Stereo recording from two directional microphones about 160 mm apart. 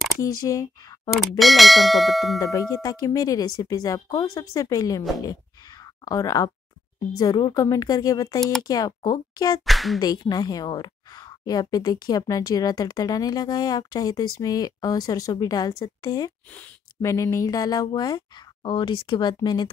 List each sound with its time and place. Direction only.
0.2 s speech: 20° left (ahead or behind)
1.4 s bell: centre (ahead or behind)
2.4 s speech: 20° left (ahead or behind)
6.0 s speech: 20° left (ahead or behind)
8.4 s bell: centre (ahead or behind)
8.6 s speech: 20° left (ahead or behind)
9.7 s bell: centre (ahead or behind)
9.9 s speech: 25° left (ahead or behind)